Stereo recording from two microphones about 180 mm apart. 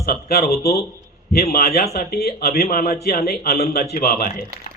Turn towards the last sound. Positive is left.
turn(degrees=50)  # may be behind; listen again after turning